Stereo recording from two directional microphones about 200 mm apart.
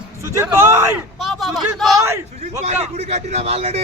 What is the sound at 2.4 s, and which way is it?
A man's voice, 35° right (ahead or behind).